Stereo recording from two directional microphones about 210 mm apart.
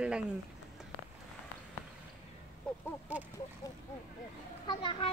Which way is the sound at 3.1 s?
5° right (ahead or behind).